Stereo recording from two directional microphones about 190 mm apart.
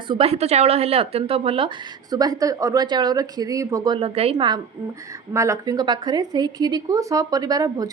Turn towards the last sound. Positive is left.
turn(degrees=-20)  # may be behind; listen again after turning